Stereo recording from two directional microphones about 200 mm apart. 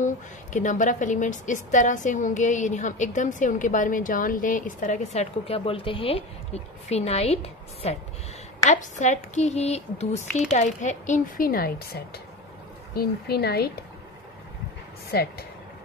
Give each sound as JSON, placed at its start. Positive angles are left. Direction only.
{"t": 0.0, "sound": "speech", "side_deg": 40}
{"t": 15.0, "sound": "speech", "side_deg": 50}